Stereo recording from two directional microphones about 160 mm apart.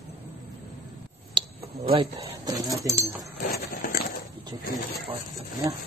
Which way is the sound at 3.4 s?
70° left (ahead or behind).